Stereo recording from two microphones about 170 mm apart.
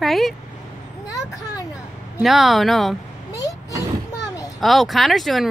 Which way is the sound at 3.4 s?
20° left (ahead or behind).